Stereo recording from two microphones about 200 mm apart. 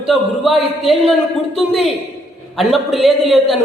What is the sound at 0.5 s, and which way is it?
Speech, 30° left (ahead or behind).